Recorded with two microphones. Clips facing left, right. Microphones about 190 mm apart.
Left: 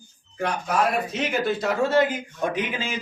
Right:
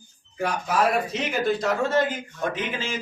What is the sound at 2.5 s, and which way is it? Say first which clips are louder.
Speech: left 2 dB; 15° left (ahead or behind).